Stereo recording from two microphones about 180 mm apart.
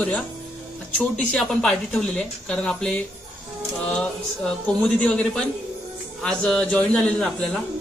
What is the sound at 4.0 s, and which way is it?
A man's voice, 5° left (ahead or behind).